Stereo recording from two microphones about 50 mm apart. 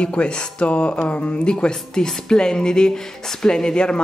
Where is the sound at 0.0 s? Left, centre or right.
Left.